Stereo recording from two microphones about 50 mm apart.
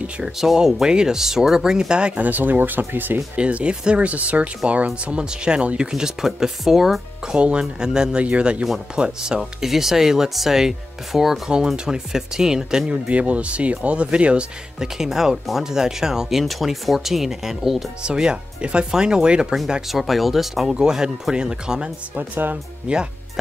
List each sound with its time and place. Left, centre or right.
0.4 s speech: centre
2.1 s speech: right
3.3 s speech: right; by 7.3 s centre
7.3 s speech: right
14.8 s speech: centre
18.0 s speech: centre
19.9 s speech: centre
20.7 s speech: centre
22.1 s speech: right
22.9 s speech: right